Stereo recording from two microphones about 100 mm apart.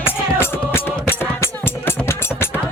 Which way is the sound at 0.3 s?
25° left (ahead or behind).